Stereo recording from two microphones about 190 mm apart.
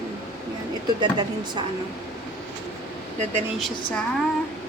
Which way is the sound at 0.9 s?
25° right (ahead or behind).